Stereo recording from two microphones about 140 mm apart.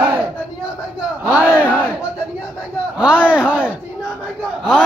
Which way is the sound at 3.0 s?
10° right (ahead or behind).